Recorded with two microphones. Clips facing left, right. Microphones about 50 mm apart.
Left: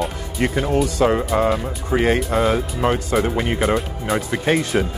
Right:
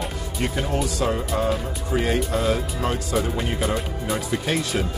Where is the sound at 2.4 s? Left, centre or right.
Left.